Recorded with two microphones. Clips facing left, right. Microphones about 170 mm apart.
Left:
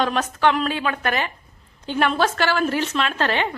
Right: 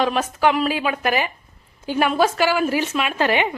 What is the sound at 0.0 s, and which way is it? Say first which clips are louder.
A woman's voice: right 1 dB; 5° right (ahead or behind).